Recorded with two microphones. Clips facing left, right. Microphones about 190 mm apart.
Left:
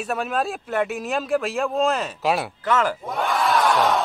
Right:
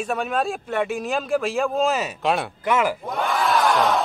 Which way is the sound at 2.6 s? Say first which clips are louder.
Right 1 dB; 10° right (ahead or behind).